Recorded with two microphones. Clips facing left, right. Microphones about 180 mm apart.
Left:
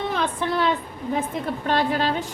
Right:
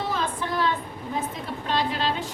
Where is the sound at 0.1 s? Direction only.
70° left (ahead or behind).